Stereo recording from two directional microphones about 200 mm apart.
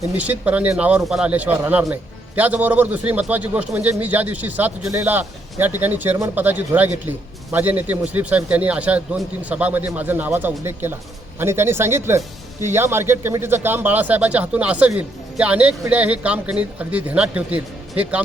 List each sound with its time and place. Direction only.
0.0 s speech: 10° right (ahead or behind)